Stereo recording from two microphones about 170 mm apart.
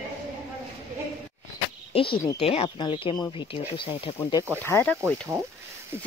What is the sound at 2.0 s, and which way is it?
Speech, 30° left (ahead or behind).